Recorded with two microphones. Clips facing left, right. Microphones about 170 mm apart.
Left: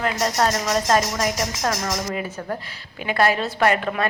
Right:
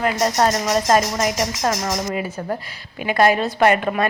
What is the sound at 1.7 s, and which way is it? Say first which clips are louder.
A woman's voice: right 2 dB; 15° right (ahead or behind).